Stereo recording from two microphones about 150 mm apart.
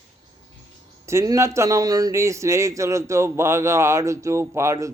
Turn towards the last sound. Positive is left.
turn(degrees=-20)  # may be behind; listen again after turning